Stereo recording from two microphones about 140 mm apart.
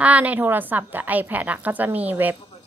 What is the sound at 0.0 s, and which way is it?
A woman's voice, 10° right (ahead or behind).